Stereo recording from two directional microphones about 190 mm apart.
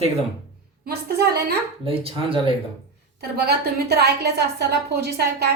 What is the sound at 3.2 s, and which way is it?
A woman's voice, 60° right (ahead or behind).